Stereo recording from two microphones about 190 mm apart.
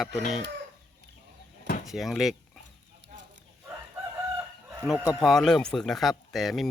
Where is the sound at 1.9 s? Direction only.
Centre (ahead or behind).